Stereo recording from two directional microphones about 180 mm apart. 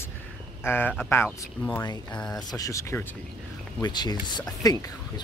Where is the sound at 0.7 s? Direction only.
10° left (ahead or behind).